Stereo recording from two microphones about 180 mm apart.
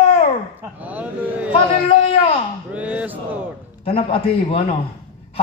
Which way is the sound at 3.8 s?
30° left (ahead or behind).